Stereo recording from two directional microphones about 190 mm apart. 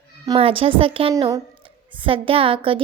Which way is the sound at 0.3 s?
30° right (ahead or behind).